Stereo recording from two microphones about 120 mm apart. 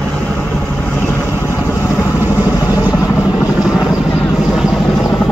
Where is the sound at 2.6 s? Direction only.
30° left (ahead or behind).